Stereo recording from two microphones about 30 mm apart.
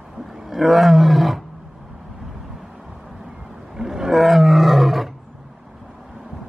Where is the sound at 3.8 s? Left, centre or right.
Right.